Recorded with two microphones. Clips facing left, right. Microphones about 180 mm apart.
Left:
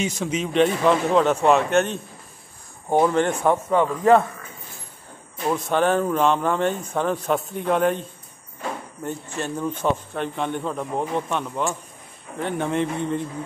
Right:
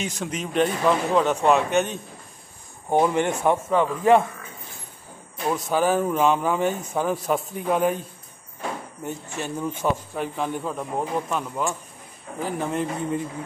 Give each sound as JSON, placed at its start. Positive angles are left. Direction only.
{"t": 0.2, "sound": "speech", "side_deg": 0}
{"t": 3.1, "sound": "speech", "side_deg": -10}
{"t": 5.5, "sound": "speech", "side_deg": -5}
{"t": 9.0, "sound": "speech", "side_deg": -5}